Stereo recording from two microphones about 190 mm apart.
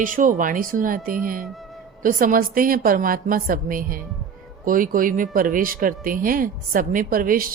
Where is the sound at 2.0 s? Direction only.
50° right (ahead or behind).